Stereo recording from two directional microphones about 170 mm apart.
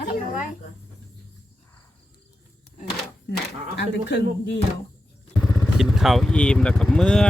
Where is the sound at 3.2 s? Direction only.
80° left.